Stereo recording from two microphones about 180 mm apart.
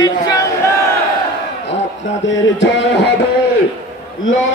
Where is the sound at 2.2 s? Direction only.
90° left.